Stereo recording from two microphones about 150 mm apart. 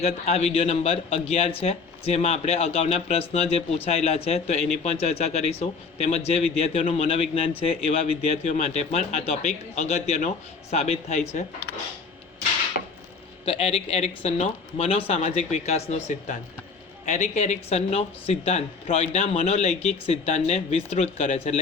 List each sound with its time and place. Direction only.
0.0 s a man's voice: 45° left (ahead or behind)
13.4 s speech: 40° left (ahead or behind)